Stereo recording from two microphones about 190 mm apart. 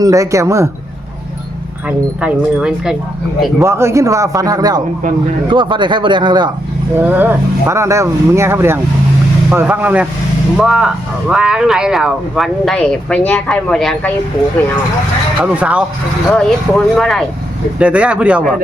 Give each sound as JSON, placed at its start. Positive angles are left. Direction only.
{"t": 0.0, "sound": "speech", "side_deg": -15}
{"t": 1.9, "sound": "speech", "side_deg": -5}
{"t": 3.6, "sound": "speech", "side_deg": -15}
{"t": 7.0, "sound": "speech", "side_deg": -10}
{"t": 15.5, "sound": "speech", "side_deg": -5}
{"t": 16.3, "sound": "speech", "side_deg": 5}